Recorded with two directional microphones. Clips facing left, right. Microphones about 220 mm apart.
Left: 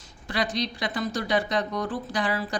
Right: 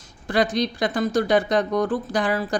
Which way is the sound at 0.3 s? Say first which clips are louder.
Right 7 dB; 50° right (ahead or behind).